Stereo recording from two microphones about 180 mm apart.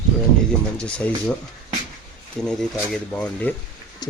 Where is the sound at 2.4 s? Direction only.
5° left (ahead or behind).